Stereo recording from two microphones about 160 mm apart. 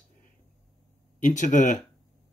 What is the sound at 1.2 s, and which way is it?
Speech, 50° left (ahead or behind).